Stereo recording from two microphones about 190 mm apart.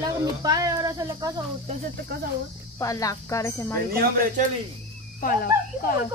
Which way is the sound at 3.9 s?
50° right (ahead or behind).